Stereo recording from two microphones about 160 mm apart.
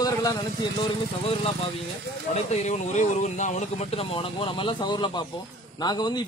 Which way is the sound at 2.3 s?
45° left (ahead or behind).